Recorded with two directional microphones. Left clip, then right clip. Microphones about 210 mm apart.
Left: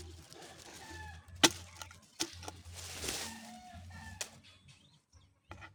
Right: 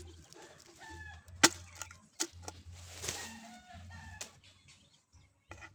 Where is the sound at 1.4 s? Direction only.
Centre (ahead or behind).